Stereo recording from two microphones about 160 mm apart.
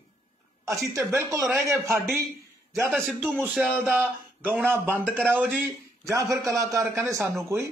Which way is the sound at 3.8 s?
10° right (ahead or behind).